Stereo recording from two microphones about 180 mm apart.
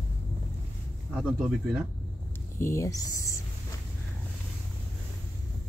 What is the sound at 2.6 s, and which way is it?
Speech, 15° left (ahead or behind).